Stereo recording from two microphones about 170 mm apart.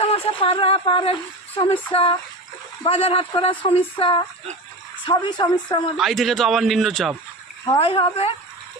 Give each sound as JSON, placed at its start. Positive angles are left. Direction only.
{"t": 0.0, "sound": "speech", "side_deg": 35}
{"t": 6.0, "sound": "a man's voice", "side_deg": 0}
{"t": 7.7, "sound": "speech", "side_deg": 35}